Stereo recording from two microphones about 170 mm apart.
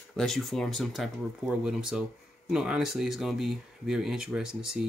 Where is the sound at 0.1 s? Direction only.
Centre (ahead or behind).